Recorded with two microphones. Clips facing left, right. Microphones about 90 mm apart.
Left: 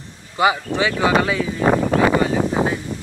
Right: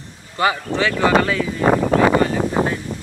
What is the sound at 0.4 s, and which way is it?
Speech, 15° left (ahead or behind).